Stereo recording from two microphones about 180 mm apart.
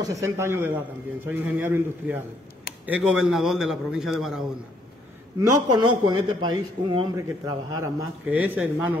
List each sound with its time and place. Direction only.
0.0 s a man's voice: 15° right (ahead or behind)
5.4 s a man's voice: 20° right (ahead or behind)
7.8 s a man's voice: 10° right (ahead or behind)